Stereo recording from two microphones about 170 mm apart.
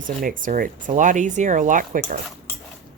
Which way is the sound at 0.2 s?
55° right (ahead or behind).